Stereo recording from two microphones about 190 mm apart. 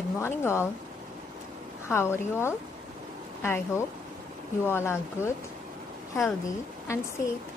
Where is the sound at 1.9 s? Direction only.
15° left (ahead or behind).